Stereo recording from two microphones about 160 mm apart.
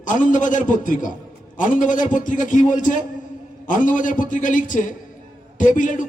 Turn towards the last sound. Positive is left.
turn(degrees=55)  # may be behind; listen again after turning